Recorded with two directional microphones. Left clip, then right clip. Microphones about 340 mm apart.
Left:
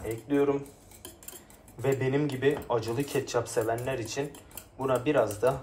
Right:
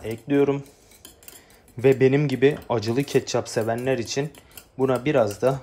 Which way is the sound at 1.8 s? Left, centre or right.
Right.